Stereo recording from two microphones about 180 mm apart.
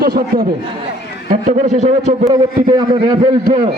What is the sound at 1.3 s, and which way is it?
A man's voice, 45° right (ahead or behind).